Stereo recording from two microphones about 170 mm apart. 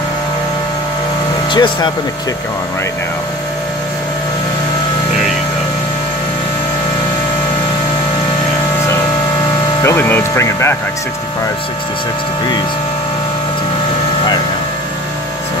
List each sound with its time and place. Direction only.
1.5 s speech: 25° left (ahead or behind)
9.8 s speech: 10° left (ahead or behind)